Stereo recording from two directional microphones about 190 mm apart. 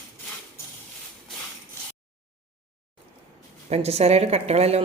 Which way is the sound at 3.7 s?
35° right (ahead or behind).